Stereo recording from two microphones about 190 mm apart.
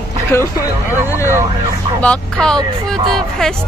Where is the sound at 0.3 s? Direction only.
15° left (ahead or behind).